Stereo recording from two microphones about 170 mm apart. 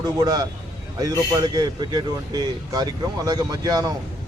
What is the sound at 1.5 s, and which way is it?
Speech, 25° right (ahead or behind).